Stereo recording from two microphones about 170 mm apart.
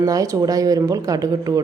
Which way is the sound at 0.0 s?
20° right (ahead or behind).